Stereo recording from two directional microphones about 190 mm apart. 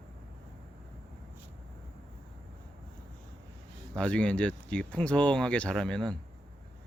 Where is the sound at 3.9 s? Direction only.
5° left (ahead or behind).